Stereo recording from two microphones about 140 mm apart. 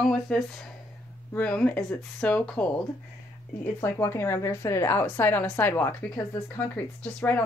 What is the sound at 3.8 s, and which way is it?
Speech, 15° left (ahead or behind).